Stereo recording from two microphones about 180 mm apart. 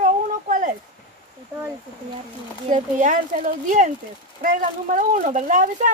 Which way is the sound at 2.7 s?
45° right (ahead or behind).